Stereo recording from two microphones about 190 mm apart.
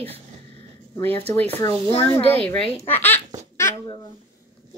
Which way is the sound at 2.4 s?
30° left (ahead or behind).